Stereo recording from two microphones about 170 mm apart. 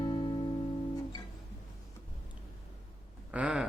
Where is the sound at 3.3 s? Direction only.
5° right (ahead or behind).